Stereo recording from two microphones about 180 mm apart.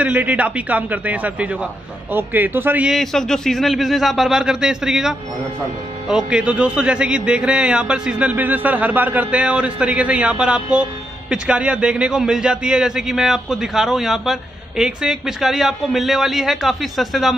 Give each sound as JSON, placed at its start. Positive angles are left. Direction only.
{"t": 0.0, "sound": "a man's voice", "side_deg": -10}